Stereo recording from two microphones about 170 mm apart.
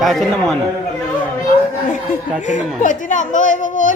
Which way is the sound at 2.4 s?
45° left (ahead or behind).